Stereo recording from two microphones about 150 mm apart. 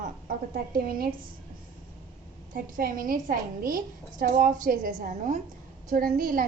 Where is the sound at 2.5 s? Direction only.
70° right (ahead or behind).